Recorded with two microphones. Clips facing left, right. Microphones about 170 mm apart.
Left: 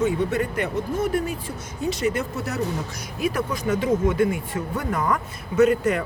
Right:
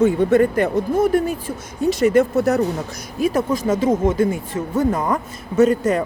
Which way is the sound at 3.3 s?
25° right (ahead or behind).